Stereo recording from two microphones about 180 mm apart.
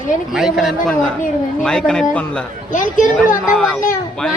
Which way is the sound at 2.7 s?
45° left (ahead or behind).